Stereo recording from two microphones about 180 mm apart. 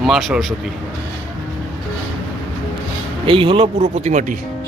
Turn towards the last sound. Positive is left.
turn(degrees=-45)  # may be behind; listen again after turning